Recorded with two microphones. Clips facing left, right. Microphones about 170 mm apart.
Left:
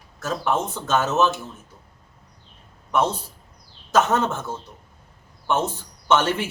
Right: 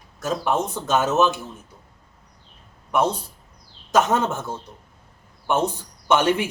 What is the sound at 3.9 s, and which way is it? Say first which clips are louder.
A man's voice: even; 15° right (ahead or behind).